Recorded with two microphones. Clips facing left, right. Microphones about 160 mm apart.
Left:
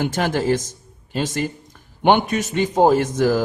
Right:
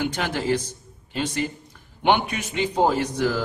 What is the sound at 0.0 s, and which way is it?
A man's voice, 45° left (ahead or behind).